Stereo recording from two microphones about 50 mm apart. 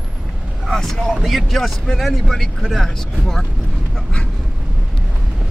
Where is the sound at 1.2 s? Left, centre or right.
Centre.